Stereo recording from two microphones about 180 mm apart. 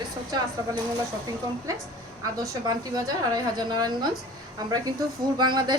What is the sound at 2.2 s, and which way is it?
A woman's voice, 20° right (ahead or behind).